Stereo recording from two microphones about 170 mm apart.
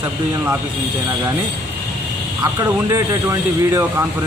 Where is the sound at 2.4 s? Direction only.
20° right (ahead or behind).